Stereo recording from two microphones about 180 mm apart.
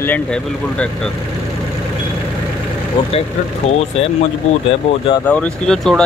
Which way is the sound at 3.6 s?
35° left (ahead or behind).